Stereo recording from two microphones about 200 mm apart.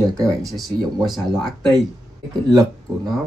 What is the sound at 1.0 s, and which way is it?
Speech, centre (ahead or behind).